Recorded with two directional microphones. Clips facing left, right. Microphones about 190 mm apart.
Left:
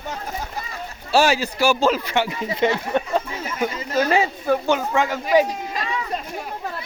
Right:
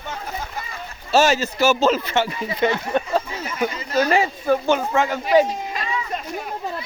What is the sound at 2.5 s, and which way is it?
Speech, 25° left (ahead or behind).